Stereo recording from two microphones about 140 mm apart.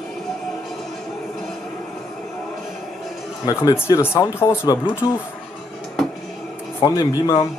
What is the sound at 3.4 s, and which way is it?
Speech, 25° left (ahead or behind).